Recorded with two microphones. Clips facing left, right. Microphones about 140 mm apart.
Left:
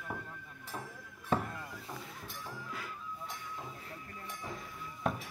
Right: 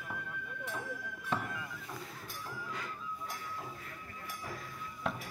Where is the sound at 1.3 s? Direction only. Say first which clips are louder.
Left 3 dB; 30° left (ahead or behind).